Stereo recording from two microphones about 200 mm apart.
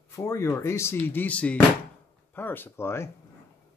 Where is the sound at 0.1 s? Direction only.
15° left (ahead or behind).